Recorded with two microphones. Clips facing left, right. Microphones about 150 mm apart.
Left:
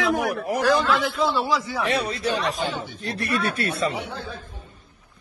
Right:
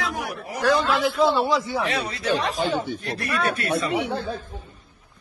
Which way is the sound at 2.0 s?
30° left (ahead or behind).